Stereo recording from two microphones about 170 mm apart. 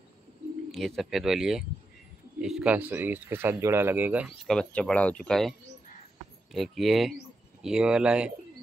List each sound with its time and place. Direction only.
0.7 s speech: centre (ahead or behind)
4.5 s speech: 5° left (ahead or behind)